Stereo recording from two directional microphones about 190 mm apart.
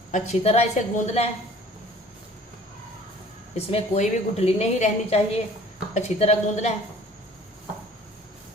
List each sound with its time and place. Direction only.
0.1 s a woman's voice: 35° left (ahead or behind)
3.5 s a woman's voice: 35° left (ahead or behind)